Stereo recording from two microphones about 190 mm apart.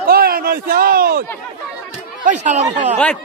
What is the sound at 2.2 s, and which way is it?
Speech, 40° right (ahead or behind).